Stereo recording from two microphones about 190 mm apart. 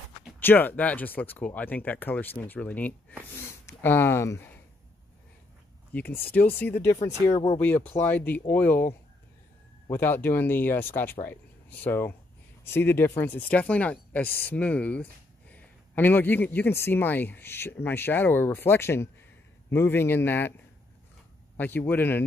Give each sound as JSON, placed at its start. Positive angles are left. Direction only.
{"t": 0.4, "sound": "a man's voice", "side_deg": 10}
{"t": 3.3, "sound": "a sound", "side_deg": 15}
{"t": 5.9, "sound": "a man's voice", "side_deg": 10}
{"t": 21.5, "sound": "a man's voice", "side_deg": 10}